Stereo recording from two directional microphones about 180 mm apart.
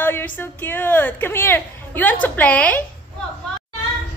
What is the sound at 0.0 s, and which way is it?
Music, 10° left (ahead or behind).